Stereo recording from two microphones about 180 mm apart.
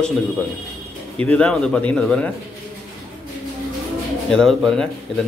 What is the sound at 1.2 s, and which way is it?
A man's voice, 5° left (ahead or behind).